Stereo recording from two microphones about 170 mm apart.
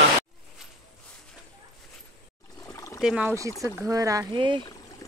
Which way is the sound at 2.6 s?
20° left (ahead or behind).